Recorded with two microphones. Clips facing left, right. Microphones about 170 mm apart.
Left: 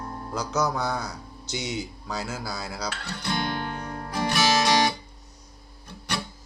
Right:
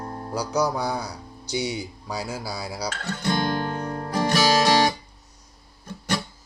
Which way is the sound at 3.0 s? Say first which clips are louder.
Right 6 dB; 45° right (ahead or behind).